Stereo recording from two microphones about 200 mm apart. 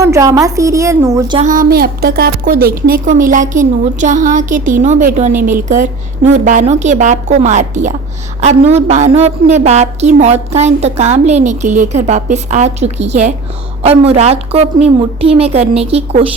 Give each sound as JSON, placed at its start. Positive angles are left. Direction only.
{"t": 0.0, "sound": "a woman's voice", "side_deg": -15}
{"t": 1.4, "sound": "a woman's voice", "side_deg": -40}